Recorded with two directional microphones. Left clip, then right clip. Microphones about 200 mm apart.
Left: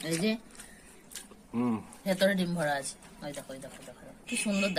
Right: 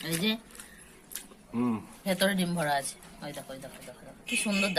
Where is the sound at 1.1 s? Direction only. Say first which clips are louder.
Even; 15° left (ahead or behind).